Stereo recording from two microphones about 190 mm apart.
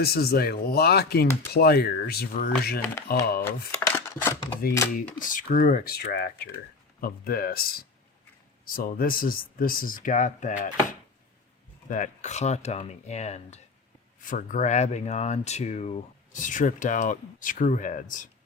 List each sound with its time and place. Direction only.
0.0 s speech: 55° left (ahead or behind)
3.4 s speech: 15° left (ahead or behind)
5.2 s speech: 45° left (ahead or behind)